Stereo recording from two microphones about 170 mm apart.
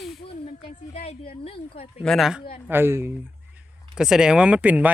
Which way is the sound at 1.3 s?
35° left (ahead or behind).